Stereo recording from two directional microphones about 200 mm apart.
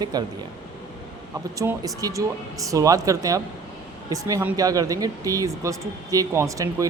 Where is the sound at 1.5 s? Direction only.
15° right (ahead or behind).